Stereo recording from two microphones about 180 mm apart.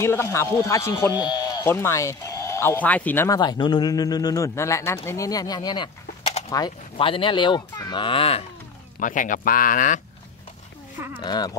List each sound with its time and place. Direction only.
0.0 s speech: 15° left (ahead or behind)
3.3 s speech: 25° left (ahead or behind)
9.0 s speech: 45° left (ahead or behind)
11.1 s speech: 25° left (ahead or behind)